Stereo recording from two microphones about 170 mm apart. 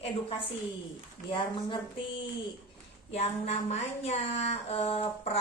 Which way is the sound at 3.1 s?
40° left (ahead or behind).